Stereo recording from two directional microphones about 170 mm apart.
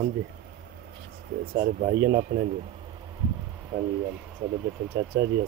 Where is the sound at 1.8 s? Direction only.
55° right (ahead or behind).